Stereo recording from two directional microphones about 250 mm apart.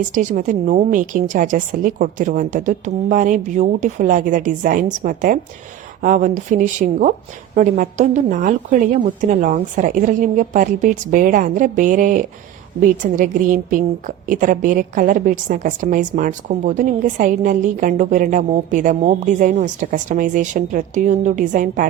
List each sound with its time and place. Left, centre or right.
0.1 s a woman's voice: right